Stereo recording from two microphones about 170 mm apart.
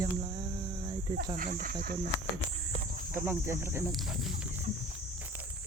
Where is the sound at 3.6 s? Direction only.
15° right (ahead or behind).